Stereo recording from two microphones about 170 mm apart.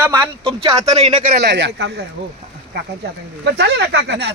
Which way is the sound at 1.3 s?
85° right.